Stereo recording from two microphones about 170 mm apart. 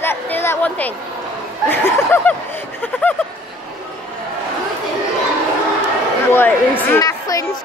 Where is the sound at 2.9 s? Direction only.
10° left (ahead or behind).